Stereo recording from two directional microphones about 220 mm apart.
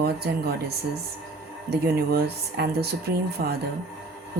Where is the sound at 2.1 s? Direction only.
45° right (ahead or behind).